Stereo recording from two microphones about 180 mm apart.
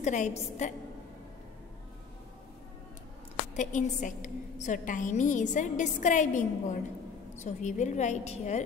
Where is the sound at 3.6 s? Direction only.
45° left (ahead or behind).